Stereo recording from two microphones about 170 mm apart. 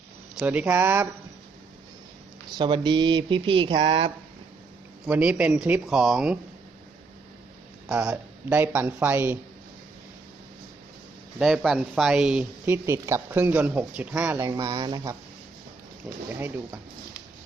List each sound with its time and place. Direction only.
0.3 s speech: 5° right (ahead or behind)
2.6 s speech: 25° right (ahead or behind)
5.0 s speech: 5° right (ahead or behind)
7.9 s speech: 5° right (ahead or behind)
11.3 s speech: centre (ahead or behind); by 15.1 s 25° right (ahead or behind)
16.1 s speech: 5° right (ahead or behind)